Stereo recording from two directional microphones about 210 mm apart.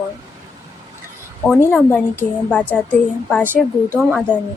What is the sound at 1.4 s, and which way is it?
A woman's voice, centre (ahead or behind).